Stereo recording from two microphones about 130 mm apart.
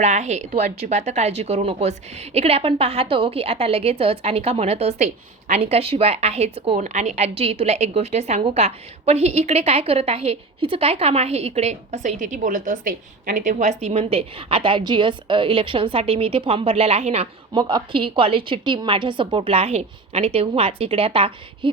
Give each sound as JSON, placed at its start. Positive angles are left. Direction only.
{"t": 0.0, "sound": "a woman's voice", "side_deg": -60}
{"t": 6.7, "sound": "a woman's voice", "side_deg": -70}
{"t": 12.2, "sound": "a woman's voice", "side_deg": -80}
{"t": 17.5, "sound": "a woman's voice", "side_deg": -35}